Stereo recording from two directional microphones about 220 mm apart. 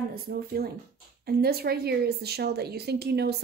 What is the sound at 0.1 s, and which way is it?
Speech, 45° right (ahead or behind).